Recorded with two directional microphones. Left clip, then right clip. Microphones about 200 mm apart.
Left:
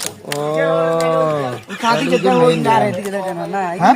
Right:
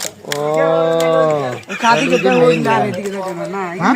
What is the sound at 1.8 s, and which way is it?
Speech, 5° right (ahead or behind).